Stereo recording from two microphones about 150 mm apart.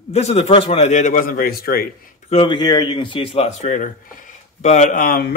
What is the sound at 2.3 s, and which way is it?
A man's voice, 35° left (ahead or behind).